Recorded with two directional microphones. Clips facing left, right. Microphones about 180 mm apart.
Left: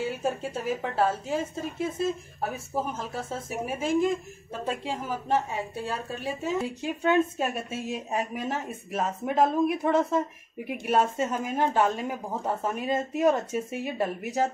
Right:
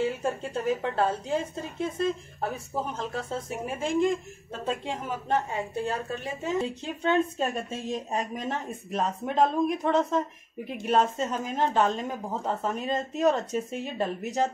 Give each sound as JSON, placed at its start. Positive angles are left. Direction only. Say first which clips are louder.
{"t": 0.2, "sound": "a woman's voice", "louder": "even", "side_deg": 5}